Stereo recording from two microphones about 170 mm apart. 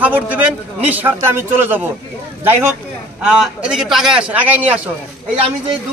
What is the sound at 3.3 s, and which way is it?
A man's voice, 5° right (ahead or behind).